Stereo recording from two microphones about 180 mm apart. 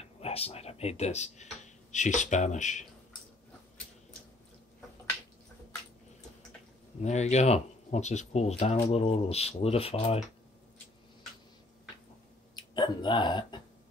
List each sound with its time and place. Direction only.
0.2 s speech: 35° left (ahead or behind)
7.0 s speech: 40° left (ahead or behind)
12.5 s speech: 25° left (ahead or behind)